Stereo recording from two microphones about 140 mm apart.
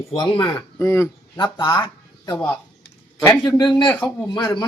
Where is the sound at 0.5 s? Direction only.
20° left (ahead or behind).